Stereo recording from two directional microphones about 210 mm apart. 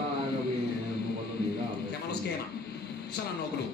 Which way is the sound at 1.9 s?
50° left (ahead or behind).